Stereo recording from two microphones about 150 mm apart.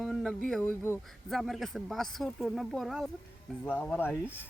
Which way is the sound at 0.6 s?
15° left (ahead or behind).